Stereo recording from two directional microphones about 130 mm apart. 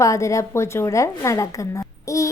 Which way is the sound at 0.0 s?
25° left (ahead or behind).